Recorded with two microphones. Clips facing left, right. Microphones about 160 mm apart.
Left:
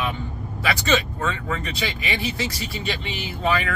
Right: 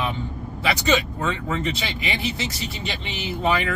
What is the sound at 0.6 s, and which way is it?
Speech, 20° right (ahead or behind).